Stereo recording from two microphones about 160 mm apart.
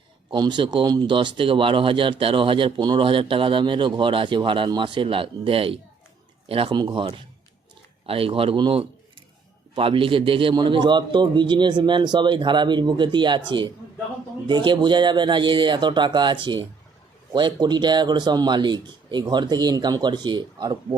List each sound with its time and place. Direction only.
0.3 s a man's voice: 30° right (ahead or behind)